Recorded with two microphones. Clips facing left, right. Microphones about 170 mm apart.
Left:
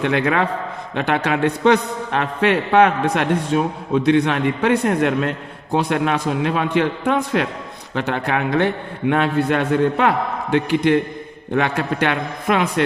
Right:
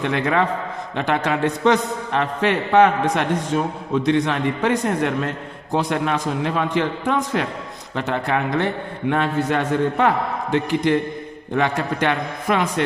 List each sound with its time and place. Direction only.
0.0 s a man's voice: 65° left (ahead or behind)